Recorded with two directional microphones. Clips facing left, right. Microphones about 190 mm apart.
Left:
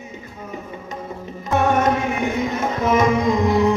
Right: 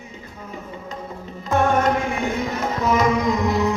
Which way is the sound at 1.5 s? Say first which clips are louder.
Left 1 dB; 20° left (ahead or behind).